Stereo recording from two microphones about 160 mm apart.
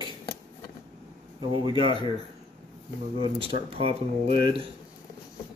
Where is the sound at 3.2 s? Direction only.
35° right (ahead or behind).